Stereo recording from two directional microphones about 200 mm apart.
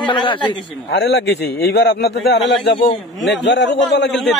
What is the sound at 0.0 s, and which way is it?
Speech, 25° left (ahead or behind).